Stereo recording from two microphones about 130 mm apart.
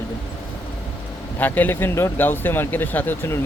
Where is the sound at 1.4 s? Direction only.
15° left (ahead or behind).